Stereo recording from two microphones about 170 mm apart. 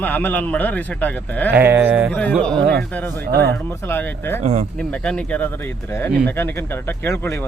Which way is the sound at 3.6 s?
10° left (ahead or behind).